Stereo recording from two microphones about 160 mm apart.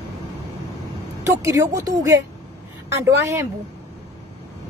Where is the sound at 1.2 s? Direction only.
20° right (ahead or behind).